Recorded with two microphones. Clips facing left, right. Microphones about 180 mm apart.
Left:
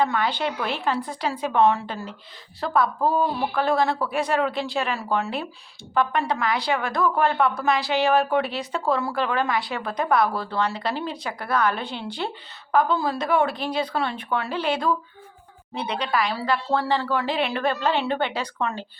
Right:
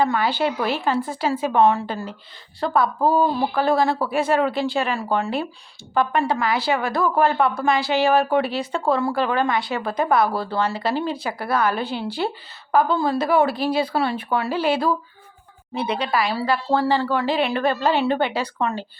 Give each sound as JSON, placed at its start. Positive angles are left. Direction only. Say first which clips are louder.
{"t": 0.0, "sound": "speech", "louder": "right 3 dB", "side_deg": -5}